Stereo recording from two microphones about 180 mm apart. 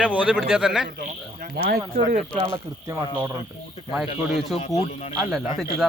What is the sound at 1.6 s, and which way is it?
Speech, 65° right (ahead or behind).